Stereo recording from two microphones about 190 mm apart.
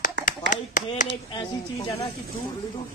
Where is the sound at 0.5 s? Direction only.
40° left (ahead or behind).